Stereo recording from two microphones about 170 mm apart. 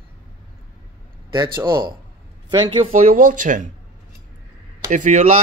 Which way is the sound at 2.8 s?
45° right (ahead or behind).